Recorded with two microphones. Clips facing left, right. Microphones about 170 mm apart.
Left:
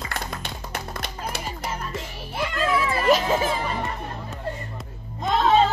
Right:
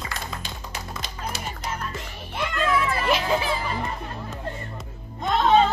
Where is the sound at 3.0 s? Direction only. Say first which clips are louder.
Left 3 dB; 40° left (ahead or behind).